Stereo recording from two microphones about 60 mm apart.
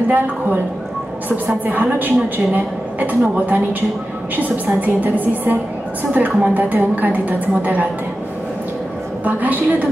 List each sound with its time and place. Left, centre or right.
1.7 s a woman's voice: right
9.2 s a woman's voice: right